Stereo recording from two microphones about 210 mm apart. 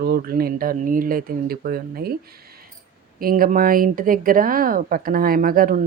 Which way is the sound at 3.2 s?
45° right (ahead or behind).